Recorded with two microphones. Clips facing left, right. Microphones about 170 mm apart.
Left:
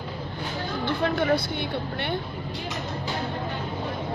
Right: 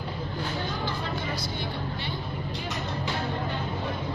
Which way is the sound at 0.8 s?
65° left (ahead or behind).